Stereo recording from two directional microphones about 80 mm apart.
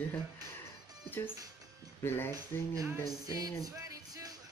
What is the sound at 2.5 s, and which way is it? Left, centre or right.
Music, left.